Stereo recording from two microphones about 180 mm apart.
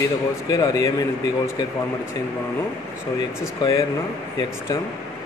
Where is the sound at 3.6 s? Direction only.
15° left (ahead or behind).